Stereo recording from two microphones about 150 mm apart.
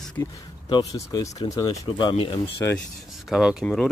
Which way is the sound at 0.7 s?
25° left (ahead or behind).